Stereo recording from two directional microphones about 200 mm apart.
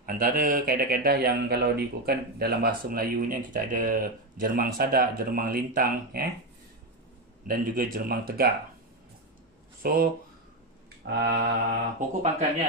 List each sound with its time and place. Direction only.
0.0 s speech: 45° right (ahead or behind)
7.4 s speech: 45° right (ahead or behind)
9.8 s speech: 50° right (ahead or behind)
11.1 s mantra: 55° right (ahead or behind)
12.2 s speech: 35° right (ahead or behind)